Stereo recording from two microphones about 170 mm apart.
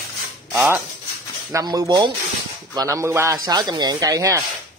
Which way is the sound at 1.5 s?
20° right (ahead or behind).